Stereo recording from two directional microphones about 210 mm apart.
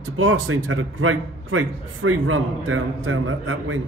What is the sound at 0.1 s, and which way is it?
A man's voice, 75° right (ahead or behind).